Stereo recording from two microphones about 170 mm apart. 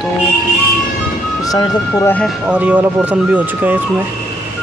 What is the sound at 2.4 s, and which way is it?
Speech, 10° right (ahead or behind).